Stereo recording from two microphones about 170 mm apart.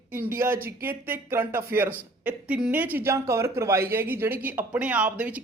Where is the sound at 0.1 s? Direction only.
10° right (ahead or behind).